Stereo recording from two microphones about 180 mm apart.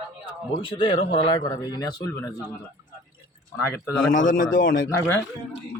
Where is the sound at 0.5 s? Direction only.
30° left (ahead or behind).